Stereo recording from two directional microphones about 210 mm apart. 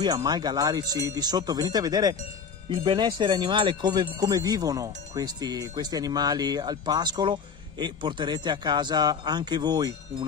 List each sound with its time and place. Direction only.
0.0 s speech: 20° right (ahead or behind)